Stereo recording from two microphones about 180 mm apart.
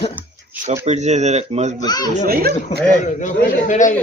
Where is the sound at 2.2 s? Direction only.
60° right (ahead or behind).